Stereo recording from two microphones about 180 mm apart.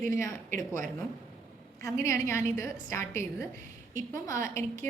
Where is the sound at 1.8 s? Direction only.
15° left (ahead or behind).